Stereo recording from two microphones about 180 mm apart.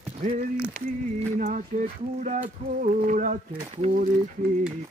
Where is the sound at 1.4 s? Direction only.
45° right (ahead or behind).